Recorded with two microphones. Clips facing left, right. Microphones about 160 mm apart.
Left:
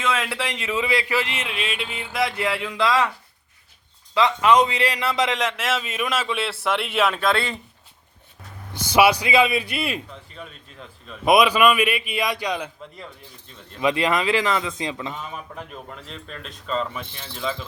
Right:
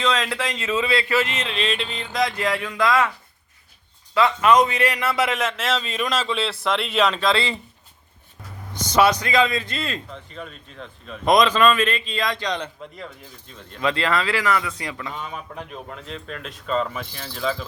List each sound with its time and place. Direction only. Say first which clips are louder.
0.0 s a man's voice: right 2 dB; 5° left (ahead or behind)
4.1 s a man's voice: right 1 dB; 15° left (ahead or behind); by 7.6 s centre (ahead or behind)
8.9 s a man's voice: left 1 dB; 10° left (ahead or behind)
15.5 s speech: right 2 dB; centre (ahead or behind)